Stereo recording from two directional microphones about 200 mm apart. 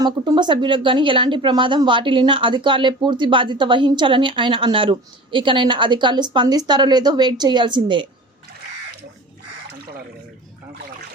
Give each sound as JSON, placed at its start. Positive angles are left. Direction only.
{"t": 0.0, "sound": "a woman's voice", "side_deg": -20}